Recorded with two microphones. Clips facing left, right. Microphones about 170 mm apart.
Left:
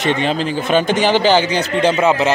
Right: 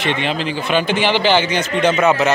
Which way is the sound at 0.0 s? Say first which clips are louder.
Left 3 dB; 40° left (ahead or behind).